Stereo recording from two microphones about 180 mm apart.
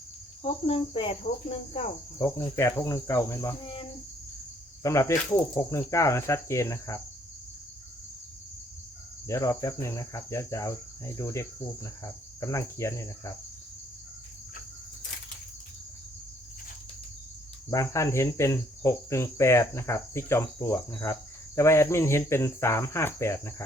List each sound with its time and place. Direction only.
0.4 s cricket: 30° left (ahead or behind)
2.1 s cricket: 15° left (ahead or behind)
9.2 s cricket: 15° left (ahead or behind)
17.7 s cricket: 15° left (ahead or behind)